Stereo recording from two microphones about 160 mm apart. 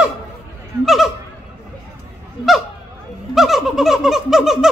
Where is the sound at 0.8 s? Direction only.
Centre (ahead or behind).